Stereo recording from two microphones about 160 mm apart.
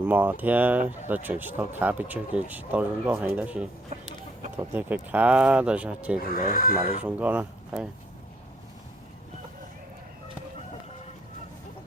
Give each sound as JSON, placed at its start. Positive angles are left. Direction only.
{"t": 0.1, "sound": "speech", "side_deg": -10}
{"t": 6.3, "sound": "speech", "side_deg": 65}
{"t": 7.0, "sound": "speech", "side_deg": -10}